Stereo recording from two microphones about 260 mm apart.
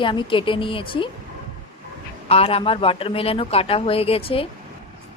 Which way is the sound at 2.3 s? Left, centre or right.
Left.